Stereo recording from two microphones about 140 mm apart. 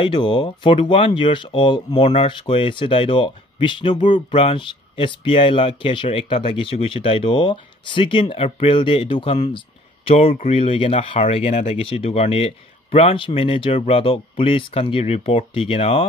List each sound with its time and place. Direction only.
0.0 s speech: 35° left (ahead or behind)